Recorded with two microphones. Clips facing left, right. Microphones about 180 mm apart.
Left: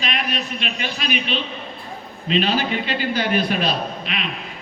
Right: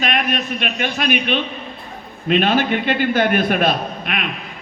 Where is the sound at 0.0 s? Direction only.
55° right (ahead or behind).